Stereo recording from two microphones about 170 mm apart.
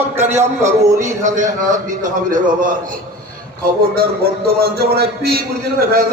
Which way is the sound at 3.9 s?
65° right (ahead or behind).